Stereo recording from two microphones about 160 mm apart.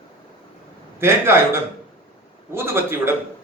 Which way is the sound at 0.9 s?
15° right (ahead or behind).